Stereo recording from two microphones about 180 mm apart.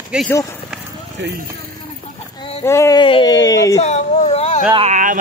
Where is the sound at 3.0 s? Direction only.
25° left (ahead or behind).